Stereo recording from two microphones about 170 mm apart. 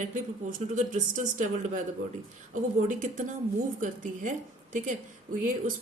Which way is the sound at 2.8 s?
50° right (ahead or behind).